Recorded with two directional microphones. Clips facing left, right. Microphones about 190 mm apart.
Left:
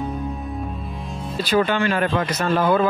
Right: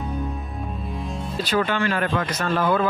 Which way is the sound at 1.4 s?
15° left (ahead or behind).